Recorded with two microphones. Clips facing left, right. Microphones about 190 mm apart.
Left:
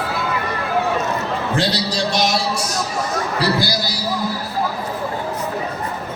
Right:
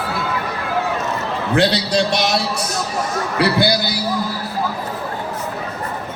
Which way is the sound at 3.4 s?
60° right (ahead or behind).